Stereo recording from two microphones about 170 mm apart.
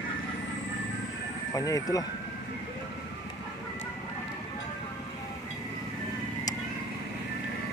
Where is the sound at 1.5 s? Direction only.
20° left (ahead or behind).